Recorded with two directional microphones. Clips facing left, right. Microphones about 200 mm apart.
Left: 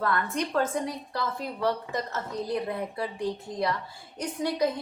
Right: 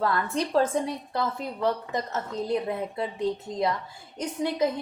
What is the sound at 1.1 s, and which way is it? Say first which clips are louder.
Speech: right 2 dB; 20° right (ahead or behind).